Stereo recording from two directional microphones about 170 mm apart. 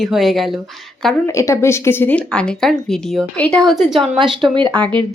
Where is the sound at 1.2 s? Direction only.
15° left (ahead or behind); by 4.0 s centre (ahead or behind).